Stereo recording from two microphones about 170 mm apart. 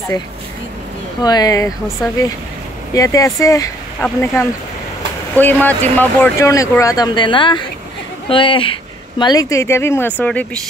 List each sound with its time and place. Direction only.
1.2 s speech: 25° left (ahead or behind)
2.9 s speech: 20° left (ahead or behind)